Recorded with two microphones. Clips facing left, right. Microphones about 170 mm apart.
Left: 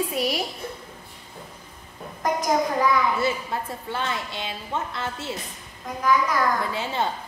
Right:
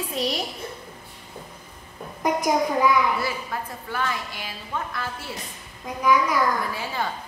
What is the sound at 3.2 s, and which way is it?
A woman's voice, 25° left (ahead or behind).